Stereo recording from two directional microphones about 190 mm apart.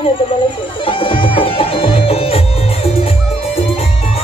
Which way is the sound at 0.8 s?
25° left (ahead or behind).